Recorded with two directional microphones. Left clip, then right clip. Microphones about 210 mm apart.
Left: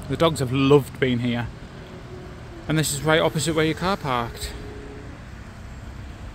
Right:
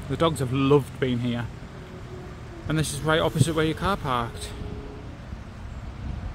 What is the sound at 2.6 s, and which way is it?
A man's voice, 25° left (ahead or behind).